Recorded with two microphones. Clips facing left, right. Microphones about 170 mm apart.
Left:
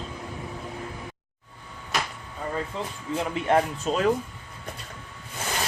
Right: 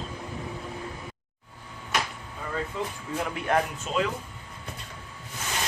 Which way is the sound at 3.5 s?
25° left (ahead or behind).